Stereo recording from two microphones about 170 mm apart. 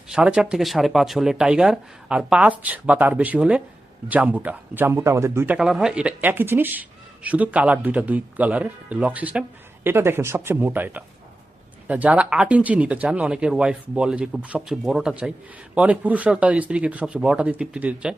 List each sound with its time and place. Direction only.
0.1 s speech: 5° right (ahead or behind)
5.5 s speech: 5° right (ahead or behind)